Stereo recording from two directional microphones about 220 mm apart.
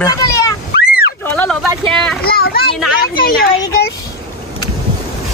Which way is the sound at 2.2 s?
45° left (ahead or behind).